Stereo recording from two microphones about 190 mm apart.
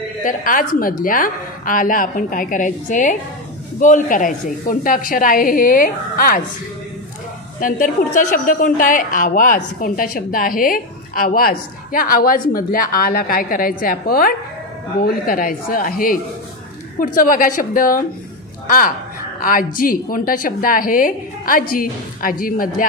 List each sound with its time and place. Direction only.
0.2 s a woman's voice: 45° left (ahead or behind)
7.6 s a woman's voice: 45° left (ahead or behind)